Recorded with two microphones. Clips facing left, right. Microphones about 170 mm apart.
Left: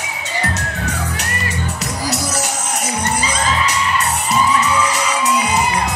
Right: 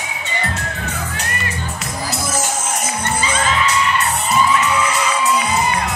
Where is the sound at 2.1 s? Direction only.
75° left (ahead or behind).